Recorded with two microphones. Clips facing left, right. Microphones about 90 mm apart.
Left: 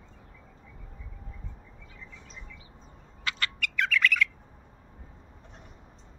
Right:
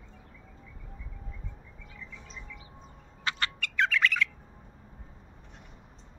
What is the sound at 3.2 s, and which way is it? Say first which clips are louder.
Bird: even; 25° right (ahead or behind).